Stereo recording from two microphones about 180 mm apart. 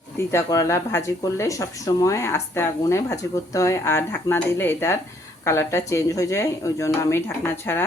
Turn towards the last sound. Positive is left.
turn(degrees=10)  # may be behind; listen again after turning